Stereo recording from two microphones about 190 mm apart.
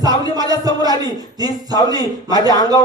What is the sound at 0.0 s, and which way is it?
Speech, 20° right (ahead or behind).